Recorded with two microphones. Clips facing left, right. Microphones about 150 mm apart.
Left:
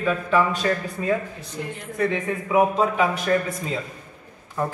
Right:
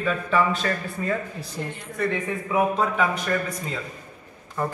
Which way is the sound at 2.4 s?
15° left (ahead or behind).